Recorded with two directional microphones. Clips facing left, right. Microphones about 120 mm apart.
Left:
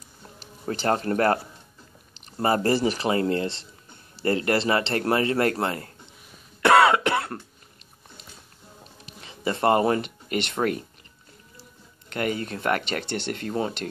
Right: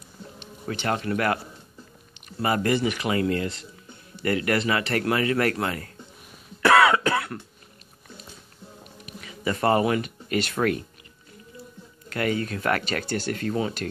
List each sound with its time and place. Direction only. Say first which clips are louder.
0.7 s speech: left 3 dB; 35° left (ahead or behind)
6.6 s cough: left 1 dB; 30° left (ahead or behind)
9.0 s speech: even; 30° left (ahead or behind)
12.1 s speech: right 1 dB; 25° left (ahead or behind)